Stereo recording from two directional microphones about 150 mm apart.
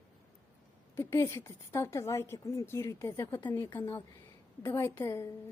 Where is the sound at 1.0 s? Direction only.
20° left (ahead or behind).